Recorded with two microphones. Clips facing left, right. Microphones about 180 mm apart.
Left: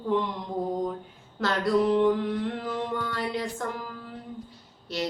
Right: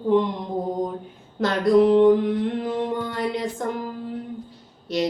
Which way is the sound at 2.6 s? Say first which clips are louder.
Right 5 dB; 20° right (ahead or behind).